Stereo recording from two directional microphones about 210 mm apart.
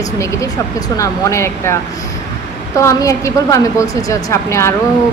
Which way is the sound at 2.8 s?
15° left (ahead or behind).